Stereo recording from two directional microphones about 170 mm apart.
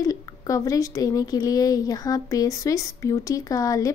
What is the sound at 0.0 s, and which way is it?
A woman's voice, 20° left (ahead or behind).